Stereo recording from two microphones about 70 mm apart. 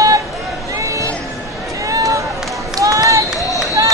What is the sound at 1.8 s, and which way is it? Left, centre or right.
Run, right.